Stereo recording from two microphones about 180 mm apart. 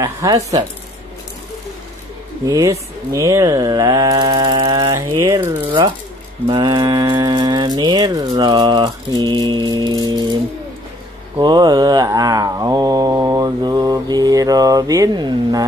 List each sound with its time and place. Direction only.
0.0 s speech: 15° right (ahead or behind)
2.4 s mantra: 15° right (ahead or behind)
6.4 s speech: 25° right (ahead or behind)
11.3 s mantra: 25° right (ahead or behind)